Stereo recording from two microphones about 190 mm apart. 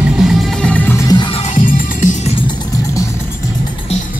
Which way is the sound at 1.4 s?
40° left (ahead or behind).